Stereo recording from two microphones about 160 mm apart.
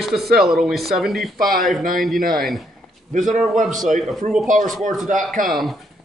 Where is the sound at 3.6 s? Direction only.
Centre (ahead or behind).